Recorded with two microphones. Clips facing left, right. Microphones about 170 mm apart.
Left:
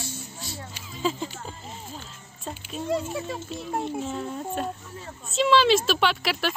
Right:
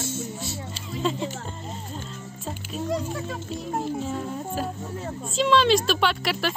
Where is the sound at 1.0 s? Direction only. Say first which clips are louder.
Right 1 dB; centre (ahead or behind).